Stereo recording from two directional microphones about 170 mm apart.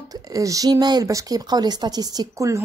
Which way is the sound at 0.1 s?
20° right (ahead or behind).